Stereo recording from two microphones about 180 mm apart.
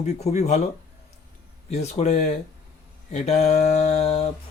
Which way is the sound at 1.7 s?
40° left (ahead or behind).